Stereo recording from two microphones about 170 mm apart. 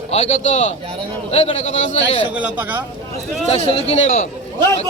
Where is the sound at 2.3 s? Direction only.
10° right (ahead or behind).